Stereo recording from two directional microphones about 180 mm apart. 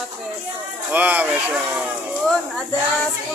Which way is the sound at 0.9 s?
10° right (ahead or behind).